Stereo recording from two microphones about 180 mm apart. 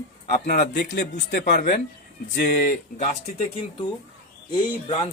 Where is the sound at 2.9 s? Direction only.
40° left (ahead or behind).